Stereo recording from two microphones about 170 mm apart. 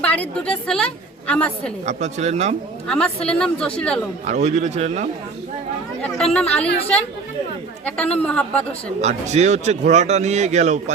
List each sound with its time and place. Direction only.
0.0 s a woman's voice: 10° left (ahead or behind)
1.9 s speech: 40° right (ahead or behind)
2.8 s speech: 5° left (ahead or behind)
4.3 s a man's voice: 45° right (ahead or behind)
6.3 s a woman's voice: 10° left (ahead or behind)
7.9 s a woman's voice: 5° left (ahead or behind)
9.0 s a man's voice: 40° right (ahead or behind)